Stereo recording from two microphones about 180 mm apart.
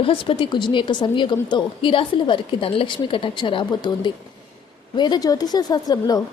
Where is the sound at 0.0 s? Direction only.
30° left (ahead or behind).